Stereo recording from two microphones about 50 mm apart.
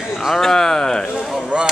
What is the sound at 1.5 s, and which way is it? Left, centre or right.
Speech, right.